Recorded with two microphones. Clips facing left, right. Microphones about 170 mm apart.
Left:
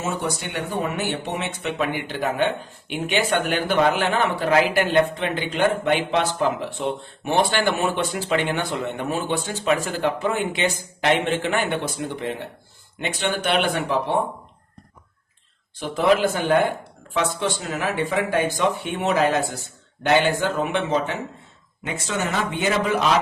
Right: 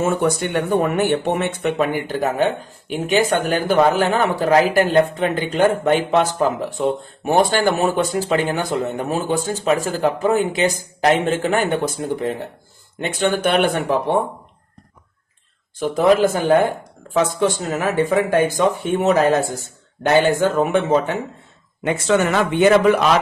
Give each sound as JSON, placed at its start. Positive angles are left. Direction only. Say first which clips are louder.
{"t": 0.0, "sound": "speech", "louder": "right 8 dB", "side_deg": -55}
{"t": 15.8, "sound": "speech", "louder": "right 4 dB", "side_deg": -45}
{"t": 21.8, "sound": "a man's voice", "louder": "right 9 dB", "side_deg": -65}